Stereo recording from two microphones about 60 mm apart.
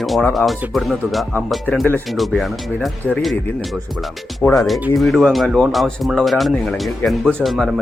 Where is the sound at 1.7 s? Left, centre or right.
Centre.